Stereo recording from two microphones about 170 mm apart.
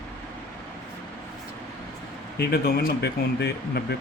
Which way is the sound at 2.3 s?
65° left (ahead or behind).